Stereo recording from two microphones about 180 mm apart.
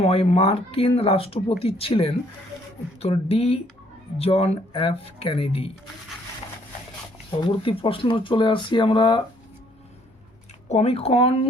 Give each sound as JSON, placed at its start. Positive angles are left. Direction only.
{"t": 0.0, "sound": "speech", "side_deg": 35}
{"t": 7.3, "sound": "speech", "side_deg": 30}
{"t": 10.7, "sound": "speech", "side_deg": 35}